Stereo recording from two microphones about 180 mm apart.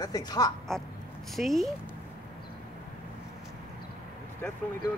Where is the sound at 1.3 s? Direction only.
Centre (ahead or behind).